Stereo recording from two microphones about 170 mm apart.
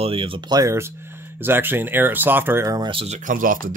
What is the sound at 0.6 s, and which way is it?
Speech, 15° right (ahead or behind).